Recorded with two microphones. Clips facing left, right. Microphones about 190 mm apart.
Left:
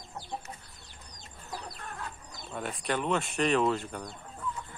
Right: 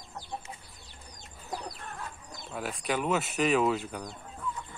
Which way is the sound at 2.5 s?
Centre (ahead or behind).